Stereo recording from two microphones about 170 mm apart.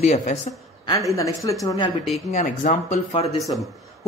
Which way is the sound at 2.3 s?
45° left (ahead or behind).